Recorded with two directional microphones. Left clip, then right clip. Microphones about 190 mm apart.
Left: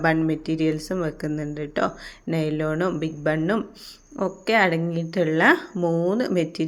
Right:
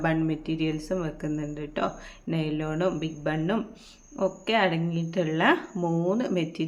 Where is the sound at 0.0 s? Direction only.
20° left (ahead or behind).